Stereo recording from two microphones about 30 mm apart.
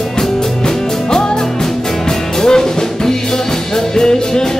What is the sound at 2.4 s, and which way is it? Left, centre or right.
Music, left.